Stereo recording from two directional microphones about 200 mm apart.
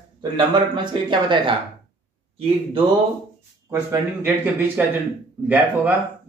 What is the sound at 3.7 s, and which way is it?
Speech, 10° right (ahead or behind).